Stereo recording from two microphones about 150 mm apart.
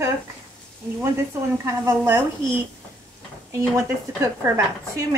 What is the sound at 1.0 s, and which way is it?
Speech, 20° right (ahead or behind).